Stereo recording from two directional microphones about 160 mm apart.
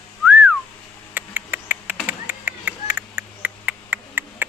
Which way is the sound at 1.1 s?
10° right (ahead or behind).